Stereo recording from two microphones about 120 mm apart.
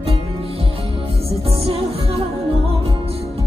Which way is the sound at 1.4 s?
55° right (ahead or behind).